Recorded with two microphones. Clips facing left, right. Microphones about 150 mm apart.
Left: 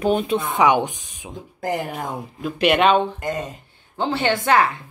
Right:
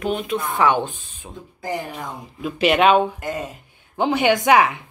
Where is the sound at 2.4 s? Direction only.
Centre (ahead or behind).